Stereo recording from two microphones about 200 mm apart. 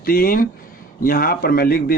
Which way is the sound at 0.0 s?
45° left (ahead or behind).